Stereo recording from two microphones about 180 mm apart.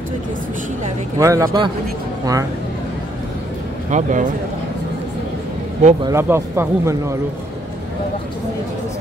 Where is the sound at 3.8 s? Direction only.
45° right (ahead or behind).